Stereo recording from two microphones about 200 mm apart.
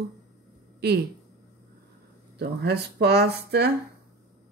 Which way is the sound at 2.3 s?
55° right (ahead or behind).